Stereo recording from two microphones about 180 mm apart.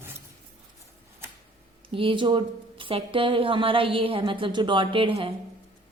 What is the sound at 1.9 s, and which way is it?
Speech, 30° right (ahead or behind).